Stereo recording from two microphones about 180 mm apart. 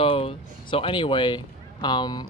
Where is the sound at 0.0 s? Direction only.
30° left (ahead or behind).